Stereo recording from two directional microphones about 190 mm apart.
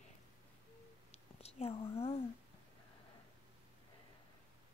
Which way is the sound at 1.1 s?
35° left (ahead or behind).